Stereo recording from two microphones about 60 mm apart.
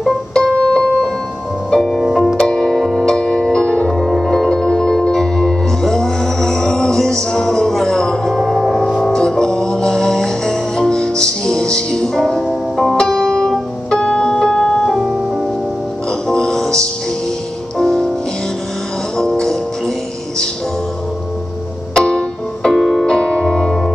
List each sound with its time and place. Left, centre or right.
0.3 s keyboard: centre
1.7 s music: centre
2.3 s music: centre
16.3 s music: centre
19.1 s music: centre
21.9 s music: centre
22.8 s music: centre
23.0 s music: centre